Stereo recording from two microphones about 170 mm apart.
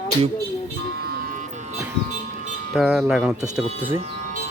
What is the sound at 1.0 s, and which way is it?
Music, 55° right (ahead or behind).